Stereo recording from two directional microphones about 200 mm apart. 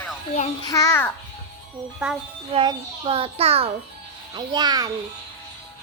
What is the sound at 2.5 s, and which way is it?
A child's voice, 25° right (ahead or behind).